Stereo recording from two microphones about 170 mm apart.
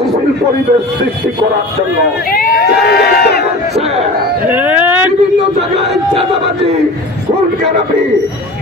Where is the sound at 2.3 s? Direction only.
60° left (ahead or behind).